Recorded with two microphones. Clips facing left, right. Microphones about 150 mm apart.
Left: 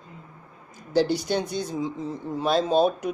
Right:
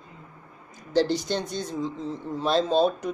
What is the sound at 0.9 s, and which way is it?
Speech, 10° left (ahead or behind).